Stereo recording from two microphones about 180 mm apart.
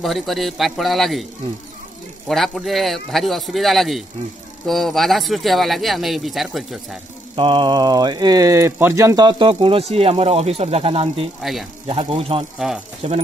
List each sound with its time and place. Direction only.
0.0 s speech: centre (ahead or behind)
2.2 s speech: centre (ahead or behind)
7.3 s speech: 30° right (ahead or behind)
12.5 s speech: 5° right (ahead or behind)
13.0 s speech: 40° right (ahead or behind)